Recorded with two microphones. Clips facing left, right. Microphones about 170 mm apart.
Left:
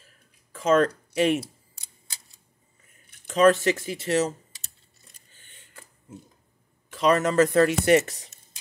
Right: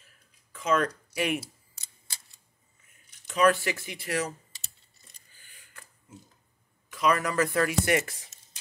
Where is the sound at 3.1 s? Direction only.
55° left (ahead or behind).